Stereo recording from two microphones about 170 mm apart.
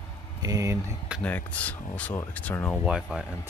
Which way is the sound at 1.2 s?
10° left (ahead or behind).